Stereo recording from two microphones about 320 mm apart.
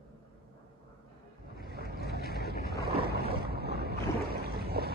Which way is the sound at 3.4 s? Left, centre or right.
Right.